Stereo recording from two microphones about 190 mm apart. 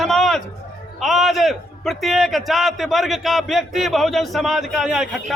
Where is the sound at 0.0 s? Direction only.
Centre (ahead or behind).